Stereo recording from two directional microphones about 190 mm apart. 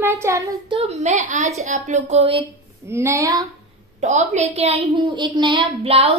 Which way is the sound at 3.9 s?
40° right (ahead or behind).